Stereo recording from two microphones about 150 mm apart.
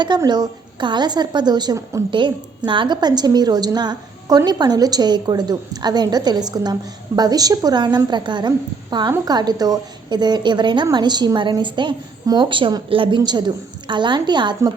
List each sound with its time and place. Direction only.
0.0 s a woman's voice: 30° right (ahead or behind)